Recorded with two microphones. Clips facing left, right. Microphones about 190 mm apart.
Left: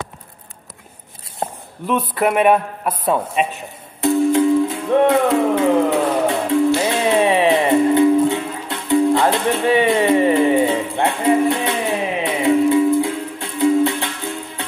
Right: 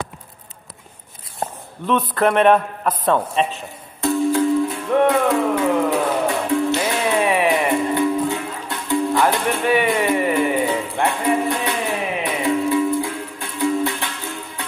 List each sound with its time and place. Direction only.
1.9 s speech: 10° left (ahead or behind)
4.0 s music: 20° left (ahead or behind)